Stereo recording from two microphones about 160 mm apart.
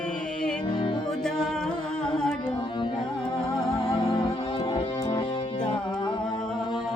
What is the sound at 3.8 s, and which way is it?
Music, 25° left (ahead or behind).